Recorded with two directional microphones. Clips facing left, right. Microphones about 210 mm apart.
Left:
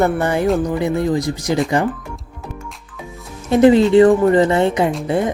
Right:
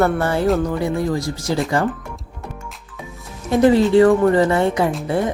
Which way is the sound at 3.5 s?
20° left (ahead or behind).